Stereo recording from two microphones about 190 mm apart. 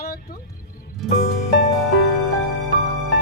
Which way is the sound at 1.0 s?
Centre (ahead or behind).